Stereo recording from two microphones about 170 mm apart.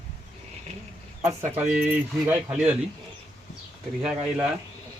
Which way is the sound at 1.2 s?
15° right (ahead or behind).